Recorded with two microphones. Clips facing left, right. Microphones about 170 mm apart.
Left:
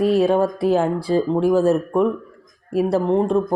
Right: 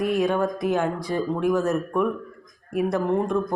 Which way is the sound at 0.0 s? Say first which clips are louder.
Left 6 dB; 30° left (ahead or behind).